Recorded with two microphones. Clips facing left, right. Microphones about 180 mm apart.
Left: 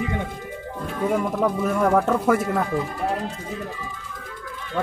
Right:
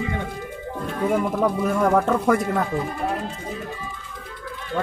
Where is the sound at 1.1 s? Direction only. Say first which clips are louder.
Right 1 dB; centre (ahead or behind).